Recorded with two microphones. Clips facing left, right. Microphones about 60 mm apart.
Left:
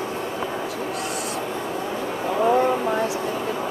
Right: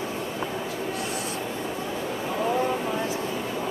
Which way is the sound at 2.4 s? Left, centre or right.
Left.